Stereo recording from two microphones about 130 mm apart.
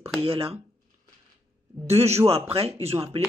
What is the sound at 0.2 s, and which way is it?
Speech, 45° right (ahead or behind).